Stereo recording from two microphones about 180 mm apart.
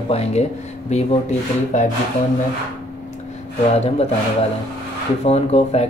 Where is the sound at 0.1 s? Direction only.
35° left (ahead or behind).